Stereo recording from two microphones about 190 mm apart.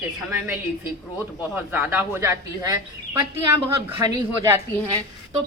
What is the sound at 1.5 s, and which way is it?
A woman's voice, 10° right (ahead or behind).